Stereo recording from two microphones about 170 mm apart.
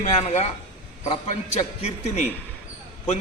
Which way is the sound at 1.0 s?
40° left (ahead or behind).